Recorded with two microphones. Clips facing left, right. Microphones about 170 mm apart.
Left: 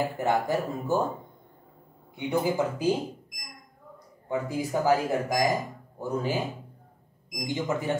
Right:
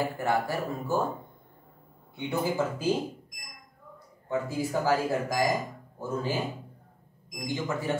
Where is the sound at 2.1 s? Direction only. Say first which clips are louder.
Left 2 dB; 15° left (ahead or behind).